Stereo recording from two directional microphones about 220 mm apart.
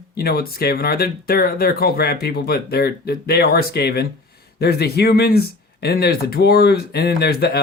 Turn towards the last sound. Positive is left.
turn(degrees=45)  # may be behind; listen again after turning